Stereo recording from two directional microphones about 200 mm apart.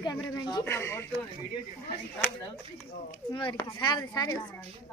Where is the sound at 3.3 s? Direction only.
25° left (ahead or behind).